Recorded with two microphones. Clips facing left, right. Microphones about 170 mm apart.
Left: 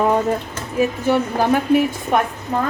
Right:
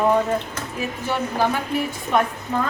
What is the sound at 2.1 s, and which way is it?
Speech, 50° left (ahead or behind).